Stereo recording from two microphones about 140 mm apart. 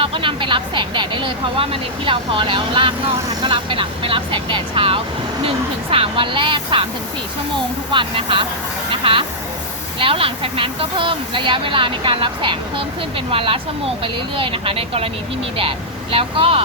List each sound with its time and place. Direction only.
0.0 s vehicle: 40° right (ahead or behind)
3.4 s a woman's voice: 35° right (ahead or behind)
16.1 s a woman's voice: 40° right (ahead or behind)